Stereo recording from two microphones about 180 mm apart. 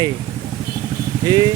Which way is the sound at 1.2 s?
20° right (ahead or behind).